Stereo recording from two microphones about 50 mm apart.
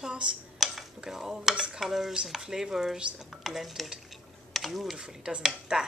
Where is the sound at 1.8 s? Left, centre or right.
Centre.